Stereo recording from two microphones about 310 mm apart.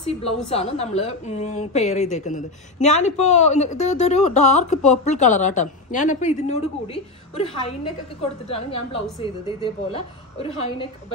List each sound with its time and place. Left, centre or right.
0.5 s a woman's voice: centre